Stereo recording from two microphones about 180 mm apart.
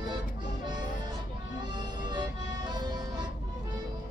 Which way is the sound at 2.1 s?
25° right (ahead or behind).